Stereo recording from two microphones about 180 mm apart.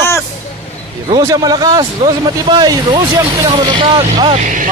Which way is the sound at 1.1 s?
20° right (ahead or behind).